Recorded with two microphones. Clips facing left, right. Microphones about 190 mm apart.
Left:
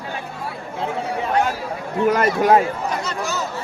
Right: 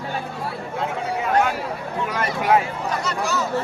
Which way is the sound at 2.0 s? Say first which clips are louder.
Left 6 dB; 45° left (ahead or behind).